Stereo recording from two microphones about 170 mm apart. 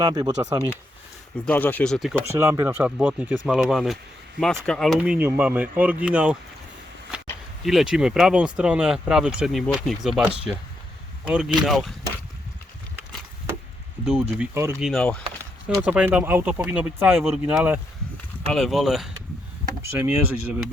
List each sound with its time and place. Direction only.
0.0 s speech: 20° right (ahead or behind)
1.5 s speech: 10° left (ahead or behind)
2.3 s speech: 15° right (ahead or behind)
7.1 s a sound: 5° right (ahead or behind)
7.6 s speech: centre (ahead or behind)
14.0 s speech: 5° right (ahead or behind)
14.5 s speech: 15° right (ahead or behind)
14.8 s speech: centre (ahead or behind)
15.9 s speech: 5° right (ahead or behind)
19.9 s speech: 10° right (ahead or behind)